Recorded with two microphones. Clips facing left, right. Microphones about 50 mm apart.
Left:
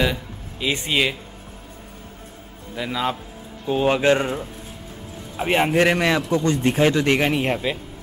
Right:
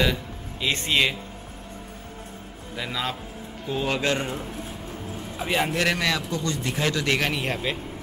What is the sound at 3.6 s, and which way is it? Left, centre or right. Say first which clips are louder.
Speech: left 7 dB; left.